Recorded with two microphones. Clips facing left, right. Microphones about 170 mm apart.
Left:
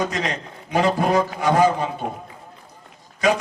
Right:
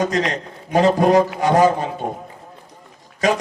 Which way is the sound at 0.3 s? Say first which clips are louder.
Right 3 dB; 40° right (ahead or behind).